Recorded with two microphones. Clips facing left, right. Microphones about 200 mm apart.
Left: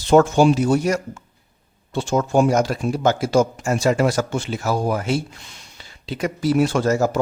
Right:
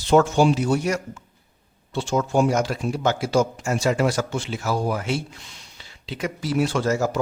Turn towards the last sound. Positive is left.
turn(degrees=45)  # may be behind; listen again after turning